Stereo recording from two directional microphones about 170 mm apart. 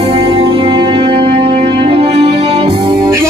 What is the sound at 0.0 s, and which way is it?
Music, 35° right (ahead or behind).